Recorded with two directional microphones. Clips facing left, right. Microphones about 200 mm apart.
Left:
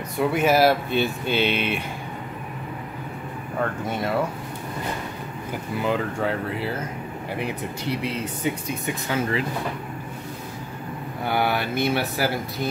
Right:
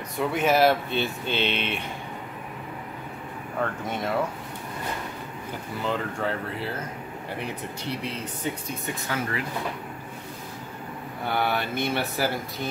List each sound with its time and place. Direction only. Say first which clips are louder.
0.2 s speech: left 2 dB; 5° left (ahead or behind)
3.5 s speech: left 3 dB; 5° left (ahead or behind)
5.8 s speech: left 4 dB; 10° left (ahead or behind)
8.0 s speech: left 5 dB; 10° left (ahead or behind)
11.2 s speech: left 3 dB; 10° left (ahead or behind)